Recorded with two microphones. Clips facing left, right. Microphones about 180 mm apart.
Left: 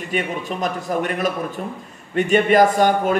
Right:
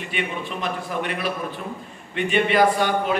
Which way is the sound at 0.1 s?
40° left (ahead or behind).